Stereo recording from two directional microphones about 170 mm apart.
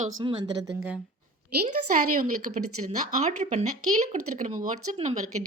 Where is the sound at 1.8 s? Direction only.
50° right (ahead or behind).